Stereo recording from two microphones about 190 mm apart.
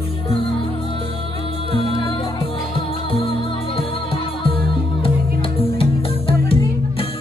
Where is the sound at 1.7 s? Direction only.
30° left (ahead or behind).